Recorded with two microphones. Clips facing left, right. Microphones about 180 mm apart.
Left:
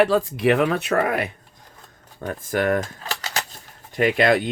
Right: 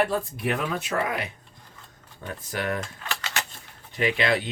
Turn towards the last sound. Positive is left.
turn(degrees=50)  # may be behind; listen again after turning